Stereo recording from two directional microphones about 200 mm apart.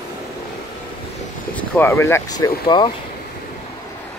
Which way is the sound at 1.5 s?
10° left (ahead or behind).